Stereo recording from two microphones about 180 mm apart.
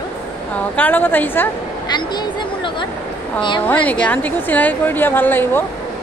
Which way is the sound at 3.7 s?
10° left (ahead or behind).